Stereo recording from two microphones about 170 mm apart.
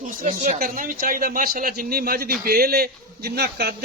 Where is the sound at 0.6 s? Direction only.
55° right (ahead or behind).